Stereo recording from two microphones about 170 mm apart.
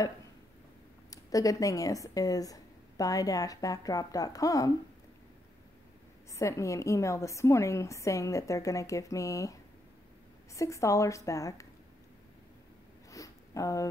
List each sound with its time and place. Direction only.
1.1 s speech: 20° left (ahead or behind)
6.3 s a woman's voice: 15° left (ahead or behind)
13.1 s a sound: 20° left (ahead or behind)